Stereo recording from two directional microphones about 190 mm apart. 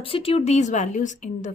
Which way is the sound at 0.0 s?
30° left (ahead or behind).